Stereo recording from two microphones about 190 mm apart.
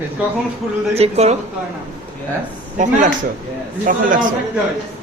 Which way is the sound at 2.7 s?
40° right (ahead or behind).